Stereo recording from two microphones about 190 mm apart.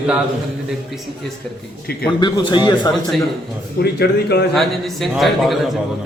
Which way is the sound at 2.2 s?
25° left (ahead or behind).